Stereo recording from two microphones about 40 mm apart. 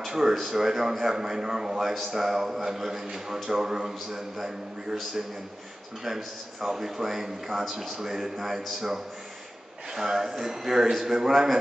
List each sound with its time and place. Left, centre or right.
0.0 s a man's voice: centre
6.0 s a man's voice: centre